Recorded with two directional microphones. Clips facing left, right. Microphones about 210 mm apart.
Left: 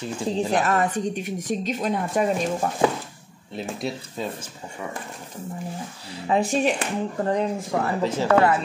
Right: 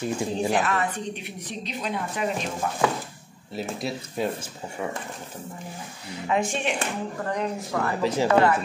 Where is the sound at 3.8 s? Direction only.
10° right (ahead or behind).